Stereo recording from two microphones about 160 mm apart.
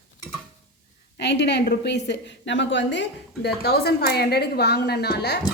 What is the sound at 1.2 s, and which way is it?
A woman's voice, 90° left.